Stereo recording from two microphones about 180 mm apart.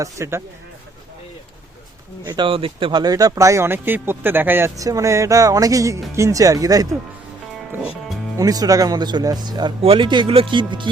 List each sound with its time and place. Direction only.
0.0 s speech: 15° right (ahead or behind)
2.2 s speech: 25° right (ahead or behind)
7.7 s music: 5° right (ahead or behind)
8.4 s speech: 20° right (ahead or behind)